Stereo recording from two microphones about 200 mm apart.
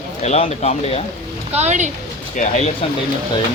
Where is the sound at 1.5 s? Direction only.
35° right (ahead or behind).